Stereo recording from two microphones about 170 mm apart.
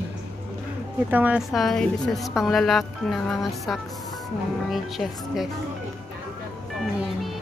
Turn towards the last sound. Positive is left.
turn(degrees=0)  # may be behind; listen again after turning